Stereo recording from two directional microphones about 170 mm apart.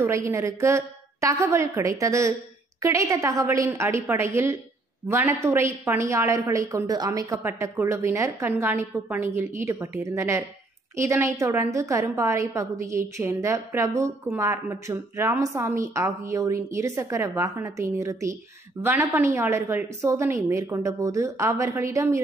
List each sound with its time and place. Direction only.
0.0 s a woman's voice: 15° right (ahead or behind)